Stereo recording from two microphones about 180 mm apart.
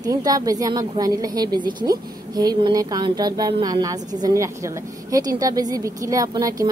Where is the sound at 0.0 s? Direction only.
20° right (ahead or behind).